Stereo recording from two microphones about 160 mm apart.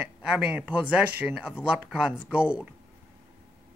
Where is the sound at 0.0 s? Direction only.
5° right (ahead or behind).